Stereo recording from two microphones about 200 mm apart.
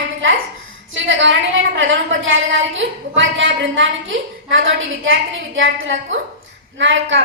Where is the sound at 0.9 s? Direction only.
70° right (ahead or behind).